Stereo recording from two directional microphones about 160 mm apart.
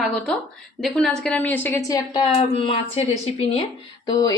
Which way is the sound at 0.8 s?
5° left (ahead or behind).